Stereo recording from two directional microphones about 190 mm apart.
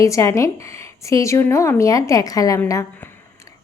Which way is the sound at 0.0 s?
15° left (ahead or behind).